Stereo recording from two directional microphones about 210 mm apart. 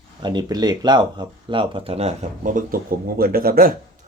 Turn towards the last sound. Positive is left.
turn(degrees=-45)  # may be behind; listen again after turning